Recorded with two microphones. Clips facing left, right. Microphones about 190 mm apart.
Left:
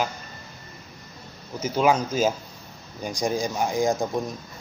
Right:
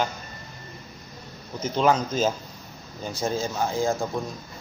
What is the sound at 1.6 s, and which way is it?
Speech, 10° left (ahead or behind).